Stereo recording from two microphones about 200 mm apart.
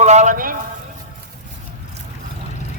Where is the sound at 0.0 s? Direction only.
35° right (ahead or behind).